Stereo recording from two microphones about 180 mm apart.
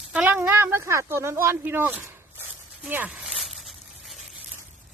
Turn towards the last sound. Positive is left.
turn(degrees=0)  # may be behind; listen again after turning